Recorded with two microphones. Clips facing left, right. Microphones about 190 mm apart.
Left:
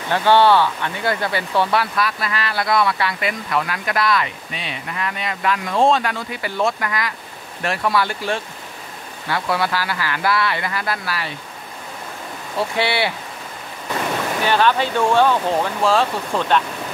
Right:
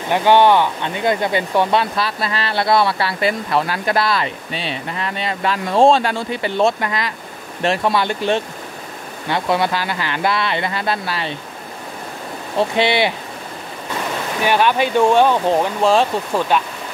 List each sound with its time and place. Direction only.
0.1 s speech: 15° right (ahead or behind)
12.5 s speech: 20° right (ahead or behind)
14.4 s speech: 15° right (ahead or behind)
16.3 s speech: 5° right (ahead or behind)